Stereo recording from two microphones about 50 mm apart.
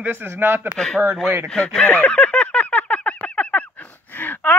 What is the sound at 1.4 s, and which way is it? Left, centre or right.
Speech, centre.